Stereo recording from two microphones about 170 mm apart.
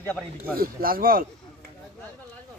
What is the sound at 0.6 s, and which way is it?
Speech, 60° right (ahead or behind).